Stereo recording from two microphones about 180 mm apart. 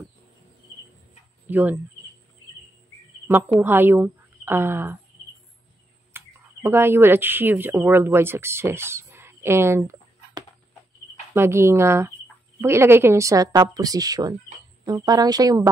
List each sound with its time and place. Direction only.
1.5 s speech: 10° right (ahead or behind)
3.6 s a woman's voice: 10° right (ahead or behind)
6.1 s speech: 15° right (ahead or behind)